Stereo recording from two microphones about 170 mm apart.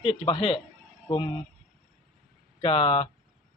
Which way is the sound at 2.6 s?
30° left (ahead or behind).